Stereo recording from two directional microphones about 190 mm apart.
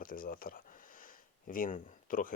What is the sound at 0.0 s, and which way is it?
Speech, 50° left (ahead or behind).